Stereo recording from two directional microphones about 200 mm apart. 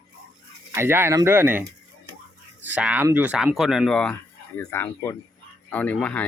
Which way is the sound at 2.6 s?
5° right (ahead or behind).